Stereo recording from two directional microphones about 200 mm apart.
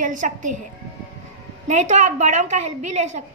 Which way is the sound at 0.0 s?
40° right (ahead or behind).